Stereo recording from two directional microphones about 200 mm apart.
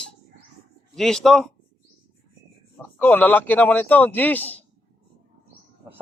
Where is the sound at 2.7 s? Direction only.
10° left (ahead or behind).